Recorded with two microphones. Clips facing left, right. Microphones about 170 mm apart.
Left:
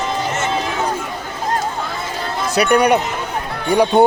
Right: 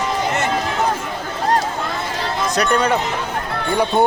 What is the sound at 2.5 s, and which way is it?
Speech, 10° left (ahead or behind).